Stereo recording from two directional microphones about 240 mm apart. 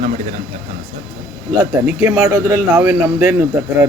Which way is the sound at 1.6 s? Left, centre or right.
Centre.